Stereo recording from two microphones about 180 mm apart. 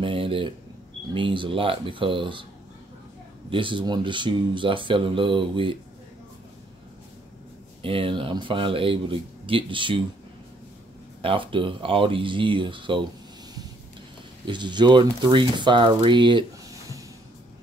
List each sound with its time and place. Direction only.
0.0 s a sound: 30° right (ahead or behind)
1.1 s speech: 30° right (ahead or behind)
3.4 s speech: 30° right (ahead or behind)
7.8 s speech: 30° right (ahead or behind)
11.2 s speech: 30° right (ahead or behind)
14.4 s speech: 25° right (ahead or behind)